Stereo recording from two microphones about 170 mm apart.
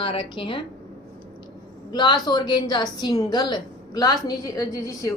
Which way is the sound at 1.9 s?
25° left (ahead or behind).